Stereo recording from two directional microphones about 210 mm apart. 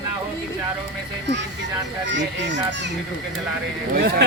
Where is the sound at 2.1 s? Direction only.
55° right (ahead or behind).